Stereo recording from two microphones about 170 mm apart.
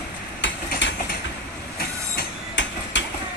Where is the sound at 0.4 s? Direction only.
90° left.